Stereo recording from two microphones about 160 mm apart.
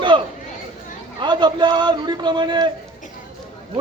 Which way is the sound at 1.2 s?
30° right (ahead or behind).